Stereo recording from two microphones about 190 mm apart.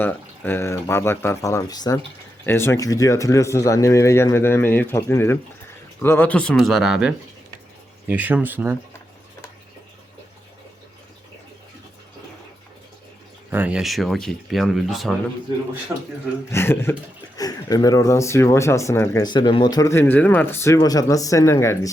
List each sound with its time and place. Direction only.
0.0 s speech: 10° left (ahead or behind); by 8.8 s 10° right (ahead or behind)
13.5 s speech: 10° right (ahead or behind)
16.5 s speech: 15° left (ahead or behind)